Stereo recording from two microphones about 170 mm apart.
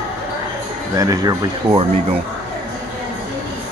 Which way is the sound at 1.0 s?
20° right (ahead or behind).